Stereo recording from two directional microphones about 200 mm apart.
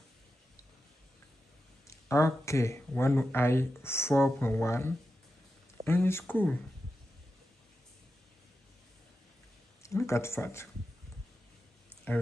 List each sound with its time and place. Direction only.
1.9 s speech: 15° left (ahead or behind)
9.8 s speech: 15° left (ahead or behind)